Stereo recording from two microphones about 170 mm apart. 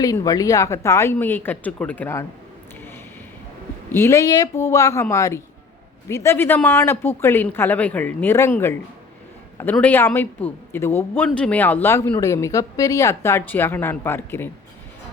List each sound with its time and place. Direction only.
0.0 s speech: 20° left (ahead or behind)
3.9 s speech: 15° left (ahead or behind)